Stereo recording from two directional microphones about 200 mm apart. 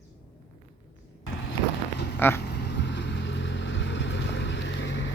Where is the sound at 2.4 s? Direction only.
55° left (ahead or behind).